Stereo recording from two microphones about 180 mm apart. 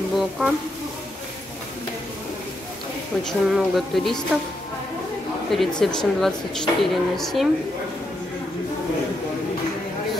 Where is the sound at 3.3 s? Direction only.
Centre (ahead or behind).